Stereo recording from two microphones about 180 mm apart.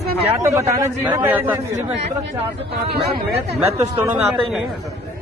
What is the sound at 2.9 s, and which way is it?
Speech, 60° right (ahead or behind).